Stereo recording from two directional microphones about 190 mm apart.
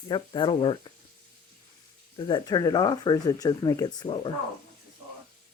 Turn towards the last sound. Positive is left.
turn(degrees=25)  # may be behind; listen again after turning